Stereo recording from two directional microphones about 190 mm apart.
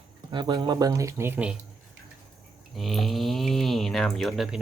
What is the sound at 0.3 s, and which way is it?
Speech, 25° right (ahead or behind).